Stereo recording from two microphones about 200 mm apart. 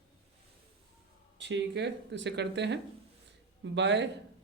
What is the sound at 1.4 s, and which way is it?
Speech, 60° right (ahead or behind).